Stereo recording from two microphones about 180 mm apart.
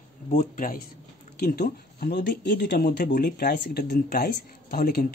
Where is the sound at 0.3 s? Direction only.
50° left (ahead or behind).